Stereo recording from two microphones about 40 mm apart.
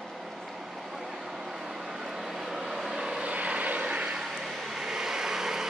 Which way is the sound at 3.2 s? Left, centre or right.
Right.